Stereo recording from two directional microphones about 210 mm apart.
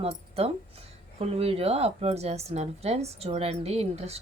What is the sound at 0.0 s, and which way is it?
Speech, 30° right (ahead or behind).